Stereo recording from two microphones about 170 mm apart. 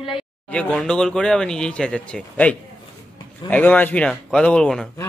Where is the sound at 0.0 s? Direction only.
30° left (ahead or behind).